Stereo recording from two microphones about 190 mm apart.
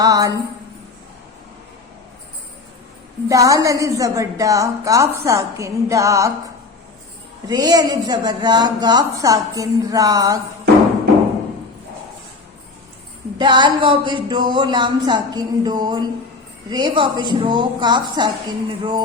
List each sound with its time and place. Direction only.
0.0 s a woman's voice: 20° right (ahead or behind)
3.2 s a woman's voice: 15° right (ahead or behind)
7.4 s a woman's voice: 20° right (ahead or behind)
13.4 s a woman's voice: 25° right (ahead or behind)